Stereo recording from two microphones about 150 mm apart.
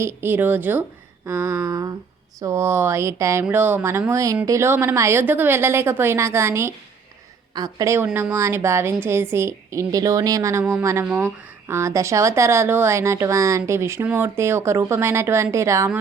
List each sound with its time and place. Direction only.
0.0 s a woman's voice: 15° right (ahead or behind)